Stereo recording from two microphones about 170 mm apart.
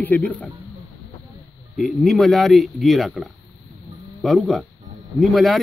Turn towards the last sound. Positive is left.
turn(degrees=0)  # may be behind; listen again after turning